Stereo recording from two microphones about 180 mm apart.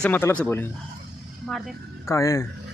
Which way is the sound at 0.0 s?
10° left (ahead or behind).